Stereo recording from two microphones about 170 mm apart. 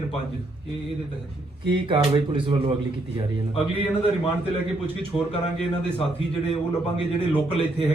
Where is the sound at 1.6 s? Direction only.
30° right (ahead or behind).